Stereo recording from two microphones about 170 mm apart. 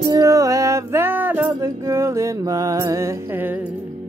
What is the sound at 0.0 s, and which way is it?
Music, 20° right (ahead or behind).